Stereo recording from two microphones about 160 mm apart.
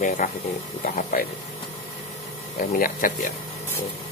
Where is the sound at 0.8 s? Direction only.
55° left (ahead or behind).